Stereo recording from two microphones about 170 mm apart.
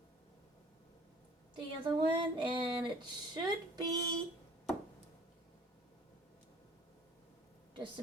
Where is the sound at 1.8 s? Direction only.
30° right (ahead or behind).